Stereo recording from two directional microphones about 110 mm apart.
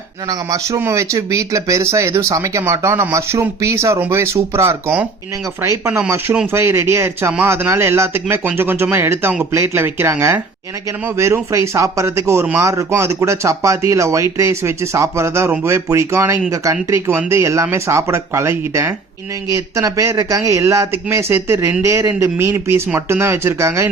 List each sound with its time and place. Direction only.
0.3 s speech: 30° right (ahead or behind)